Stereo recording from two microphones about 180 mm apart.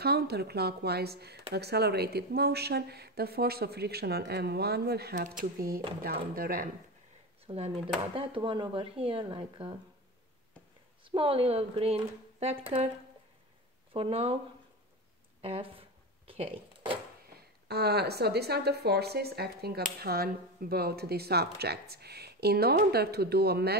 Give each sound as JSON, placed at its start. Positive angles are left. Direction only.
{"t": 0.0, "sound": "speech", "side_deg": -60}
{"t": 7.4, "sound": "speech", "side_deg": -35}
{"t": 11.1, "sound": "speech", "side_deg": -30}
{"t": 13.9, "sound": "speech", "side_deg": -30}
{"t": 15.4, "sound": "speech", "side_deg": -30}
{"t": 16.3, "sound": "a sound", "side_deg": -30}
{"t": 17.6, "sound": "speech", "side_deg": -65}